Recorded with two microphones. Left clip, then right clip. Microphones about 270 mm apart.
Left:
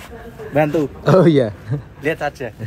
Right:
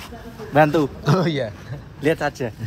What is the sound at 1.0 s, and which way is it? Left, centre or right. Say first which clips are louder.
Speech: left 9 dB; centre.